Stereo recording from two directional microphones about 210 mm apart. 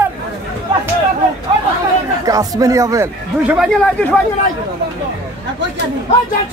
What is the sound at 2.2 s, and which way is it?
A man's voice, 15° right (ahead or behind).